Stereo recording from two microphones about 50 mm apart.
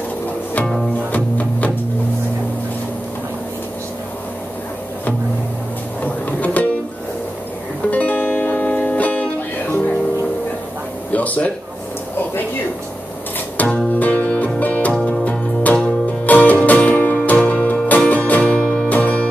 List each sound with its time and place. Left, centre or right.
1.1 s music: left
6.4 s music: left
7.9 s music: left
11.1 s a sound: left
13.6 s music: left